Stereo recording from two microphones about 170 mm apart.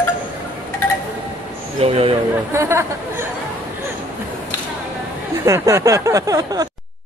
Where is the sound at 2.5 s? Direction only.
15° right (ahead or behind).